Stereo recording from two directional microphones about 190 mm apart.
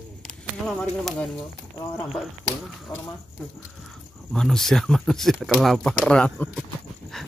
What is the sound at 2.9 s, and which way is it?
Speech, 20° left (ahead or behind).